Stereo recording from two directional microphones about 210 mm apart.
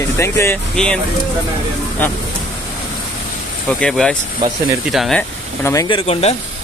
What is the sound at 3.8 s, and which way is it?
Speech, centre (ahead or behind).